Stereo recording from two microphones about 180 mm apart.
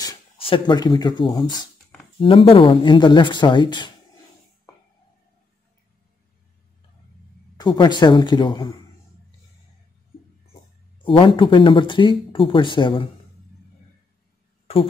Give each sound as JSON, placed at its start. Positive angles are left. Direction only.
{"t": 0.4, "sound": "speech", "side_deg": 25}
{"t": 7.5, "sound": "speech", "side_deg": 25}
{"t": 11.1, "sound": "speech", "side_deg": 30}